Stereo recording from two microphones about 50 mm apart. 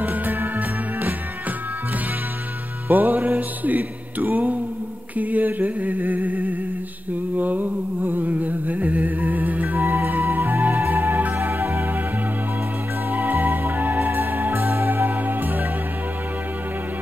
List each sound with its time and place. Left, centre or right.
0.0 s music: right
2.9 s music: right
7.3 s a sound: right
11.4 s music: right
13.1 s music: right